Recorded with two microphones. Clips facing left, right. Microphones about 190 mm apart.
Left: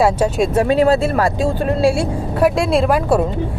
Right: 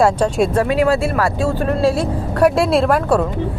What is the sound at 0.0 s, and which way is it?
Speech, centre (ahead or behind).